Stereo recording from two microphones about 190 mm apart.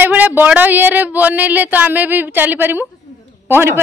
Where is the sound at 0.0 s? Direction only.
10° right (ahead or behind).